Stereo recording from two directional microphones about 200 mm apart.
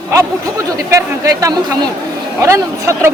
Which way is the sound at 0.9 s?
15° right (ahead or behind).